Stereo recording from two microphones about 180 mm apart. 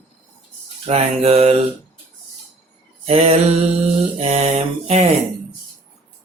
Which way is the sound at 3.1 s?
35° right (ahead or behind).